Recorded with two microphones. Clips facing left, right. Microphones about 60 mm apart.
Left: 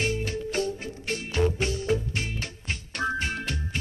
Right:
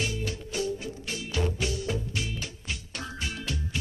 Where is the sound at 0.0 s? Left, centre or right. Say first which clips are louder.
Left 4 dB; left.